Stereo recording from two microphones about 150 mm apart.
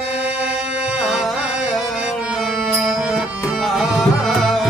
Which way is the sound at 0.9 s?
Centre (ahead or behind).